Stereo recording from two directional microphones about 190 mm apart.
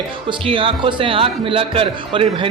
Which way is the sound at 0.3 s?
30° right (ahead or behind).